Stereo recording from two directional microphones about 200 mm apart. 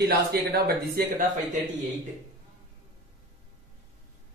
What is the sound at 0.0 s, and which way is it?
Speech, 50° right (ahead or behind).